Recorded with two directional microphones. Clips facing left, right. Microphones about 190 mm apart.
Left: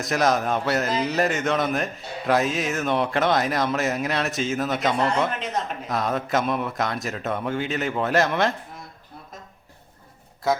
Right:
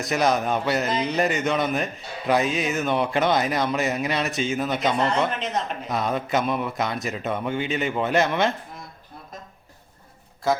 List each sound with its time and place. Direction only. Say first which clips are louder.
0.0 s speech: even; centre (ahead or behind)